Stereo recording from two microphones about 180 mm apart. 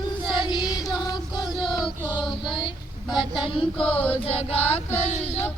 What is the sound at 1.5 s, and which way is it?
Child singing, centre (ahead or behind).